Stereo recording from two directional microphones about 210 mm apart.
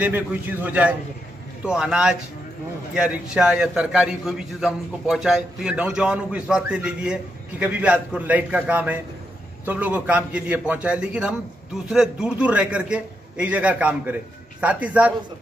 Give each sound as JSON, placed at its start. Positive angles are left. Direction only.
{"t": 0.0, "sound": "a man's voice", "side_deg": -10}